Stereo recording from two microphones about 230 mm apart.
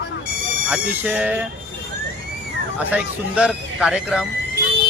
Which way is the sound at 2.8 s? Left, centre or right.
Centre.